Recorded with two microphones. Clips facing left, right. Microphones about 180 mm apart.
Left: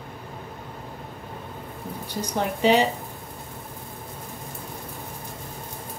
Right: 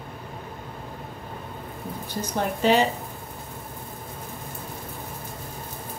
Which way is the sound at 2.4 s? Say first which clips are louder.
Left 1 dB; 15° left (ahead or behind).